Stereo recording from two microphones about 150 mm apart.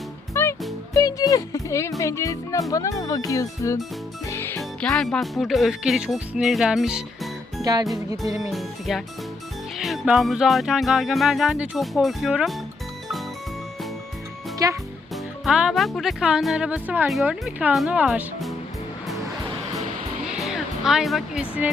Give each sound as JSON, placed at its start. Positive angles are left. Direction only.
{"t": 0.4, "sound": "music", "side_deg": 15}
{"t": 0.9, "sound": "speech", "side_deg": 25}
{"t": 4.3, "sound": "music", "side_deg": 15}
{"t": 4.8, "sound": "music", "side_deg": 5}
{"t": 7.6, "sound": "music", "side_deg": -25}
{"t": 8.4, "sound": "music", "side_deg": 0}
{"t": 14.6, "sound": "music", "side_deg": -25}
{"t": 15.1, "sound": "speech", "side_deg": -5}
{"t": 17.1, "sound": "music", "side_deg": 0}
{"t": 20.2, "sound": "music", "side_deg": -5}